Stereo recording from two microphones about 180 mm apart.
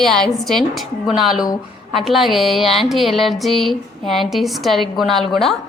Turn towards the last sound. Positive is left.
turn(degrees=0)  # may be behind; listen again after turning